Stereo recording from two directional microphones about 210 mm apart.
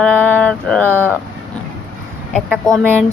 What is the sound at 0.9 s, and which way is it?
Speech, 10° right (ahead or behind).